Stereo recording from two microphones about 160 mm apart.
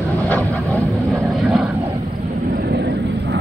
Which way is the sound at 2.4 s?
75° right (ahead or behind).